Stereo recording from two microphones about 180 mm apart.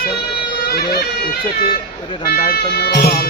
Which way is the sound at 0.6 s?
55° left (ahead or behind).